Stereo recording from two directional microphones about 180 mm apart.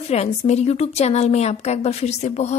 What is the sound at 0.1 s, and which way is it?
A woman's voice, 35° left (ahead or behind).